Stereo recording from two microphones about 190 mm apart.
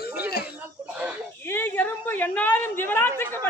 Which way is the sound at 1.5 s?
10° left (ahead or behind).